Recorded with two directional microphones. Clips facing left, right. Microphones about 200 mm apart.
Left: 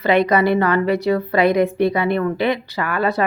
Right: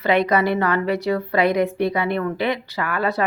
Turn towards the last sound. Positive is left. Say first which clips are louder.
# left 3 dB
turn(degrees=30)  # may be behind; listen again after turning